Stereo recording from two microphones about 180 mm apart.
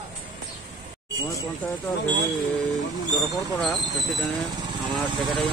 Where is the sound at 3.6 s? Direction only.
Centre (ahead or behind).